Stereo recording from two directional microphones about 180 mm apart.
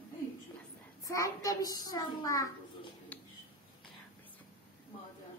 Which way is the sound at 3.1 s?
10° left (ahead or behind).